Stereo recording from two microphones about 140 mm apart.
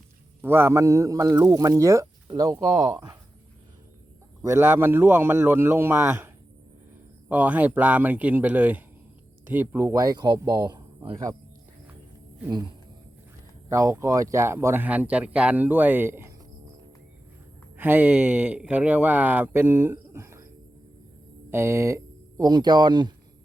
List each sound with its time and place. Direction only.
0.4 s a man's voice: 15° right (ahead or behind)
4.4 s a man's voice: 15° right (ahead or behind)
12.5 s speech: 30° right (ahead or behind)
13.7 s speech: 20° right (ahead or behind)
17.7 s speech: 15° right (ahead or behind)
21.5 s speech: 20° right (ahead or behind)